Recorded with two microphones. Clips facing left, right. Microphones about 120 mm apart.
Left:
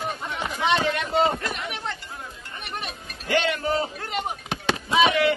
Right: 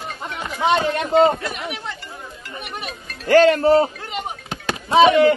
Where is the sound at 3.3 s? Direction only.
40° right (ahead or behind).